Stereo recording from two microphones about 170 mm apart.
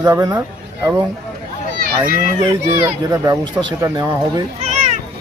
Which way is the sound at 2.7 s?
20° right (ahead or behind).